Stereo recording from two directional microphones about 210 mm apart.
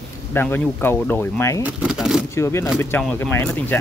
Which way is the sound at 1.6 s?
5° right (ahead or behind).